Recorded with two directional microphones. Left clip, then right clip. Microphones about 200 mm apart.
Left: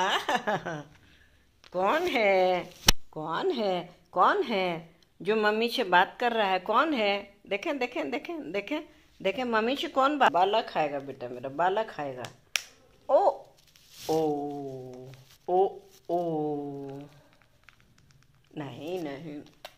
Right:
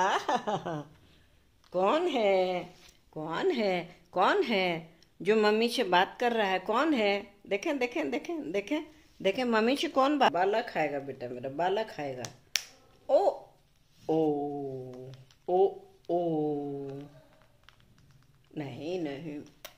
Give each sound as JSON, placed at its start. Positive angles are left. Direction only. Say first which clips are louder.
{"t": 0.0, "sound": "a woman's voice", "louder": "left 1 dB", "side_deg": -15}
{"t": 1.7, "sound": "speech", "louder": "left 1 dB", "side_deg": -20}
{"t": 2.1, "sound": "a sound", "louder": "left 3 dB", "side_deg": -5}
{"t": 3.1, "sound": "speech", "louder": "left 1 dB", "side_deg": 5}
{"t": 10.3, "sound": "speech", "louder": "left 3 dB", "side_deg": -5}
{"t": 14.4, "sound": "a sound", "louder": "even", "side_deg": 5}
{"t": 15.0, "sound": "speech", "louder": "left 2 dB", "side_deg": -10}
{"t": 18.5, "sound": "speech", "louder": "even", "side_deg": -10}